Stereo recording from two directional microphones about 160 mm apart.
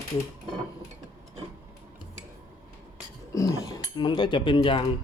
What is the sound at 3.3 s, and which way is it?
Cutlery, 20° left (ahead or behind).